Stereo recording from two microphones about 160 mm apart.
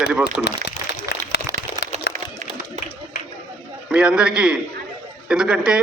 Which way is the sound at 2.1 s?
90° left.